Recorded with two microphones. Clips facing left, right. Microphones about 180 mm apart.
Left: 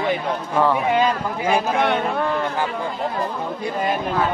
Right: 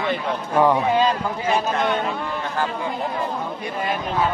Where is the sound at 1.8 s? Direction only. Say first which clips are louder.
Left 3 dB; 65° left (ahead or behind).